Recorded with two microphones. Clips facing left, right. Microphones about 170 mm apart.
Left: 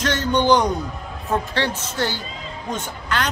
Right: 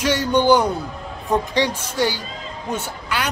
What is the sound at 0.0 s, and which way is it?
A woman's voice, 10° right (ahead or behind).